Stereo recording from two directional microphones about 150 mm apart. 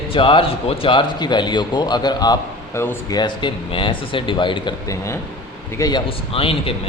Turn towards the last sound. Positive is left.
turn(degrees=40)  # may be behind; listen again after turning